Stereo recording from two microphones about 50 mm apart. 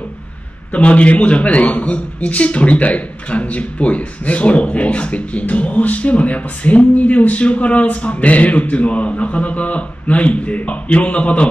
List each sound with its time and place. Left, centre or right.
0.7 s a man's voice: left